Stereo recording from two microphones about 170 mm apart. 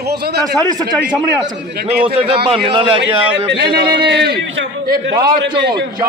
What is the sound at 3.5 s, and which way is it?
A man's voice, 80° right.